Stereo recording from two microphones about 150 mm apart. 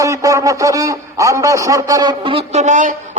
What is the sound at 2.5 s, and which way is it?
Speech, 55° right (ahead or behind).